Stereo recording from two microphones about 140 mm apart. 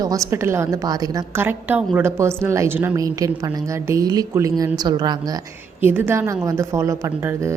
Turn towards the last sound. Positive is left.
turn(degrees=-20)  # may be behind; listen again after turning